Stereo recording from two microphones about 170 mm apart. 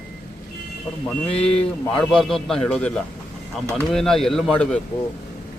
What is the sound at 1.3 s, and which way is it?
Speech, 35° left (ahead or behind).